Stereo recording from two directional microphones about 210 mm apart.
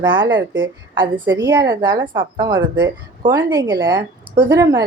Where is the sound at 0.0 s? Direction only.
20° right (ahead or behind).